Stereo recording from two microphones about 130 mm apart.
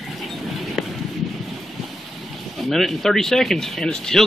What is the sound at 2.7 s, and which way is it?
Speech, centre (ahead or behind).